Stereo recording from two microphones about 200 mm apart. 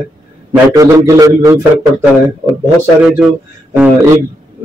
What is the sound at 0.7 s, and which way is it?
Speech, 15° right (ahead or behind).